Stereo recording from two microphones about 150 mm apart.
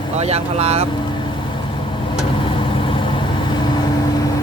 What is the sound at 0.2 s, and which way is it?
Speech, 45° right (ahead or behind).